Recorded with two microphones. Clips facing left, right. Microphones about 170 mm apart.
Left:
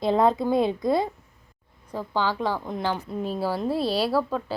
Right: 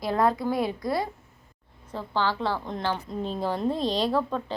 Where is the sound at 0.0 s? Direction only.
20° left (ahead or behind).